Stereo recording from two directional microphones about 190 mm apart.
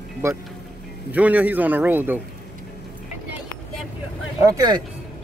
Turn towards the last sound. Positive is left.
turn(degrees=-20)  # may be behind; listen again after turning